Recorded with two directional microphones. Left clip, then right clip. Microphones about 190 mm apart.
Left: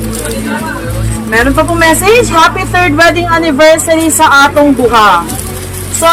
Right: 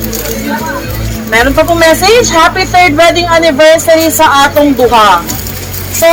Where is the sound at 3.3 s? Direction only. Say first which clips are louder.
Right 1 dB; 25° left (ahead or behind).